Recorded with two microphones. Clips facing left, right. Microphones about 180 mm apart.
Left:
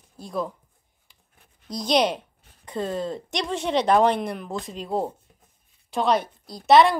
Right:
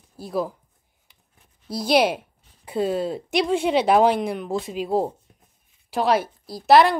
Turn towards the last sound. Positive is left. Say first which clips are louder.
# right 1 dB
turn(degrees=0)  # may be behind; listen again after turning